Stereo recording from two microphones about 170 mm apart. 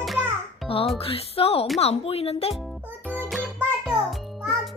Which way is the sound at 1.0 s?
35° left (ahead or behind).